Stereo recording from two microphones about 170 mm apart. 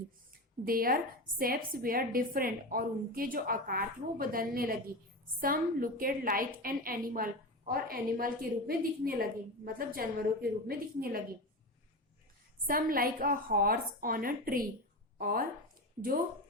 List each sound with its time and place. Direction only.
0.6 s a woman's voice: 60° right (ahead or behind)
12.6 s a woman's voice: 60° right (ahead or behind)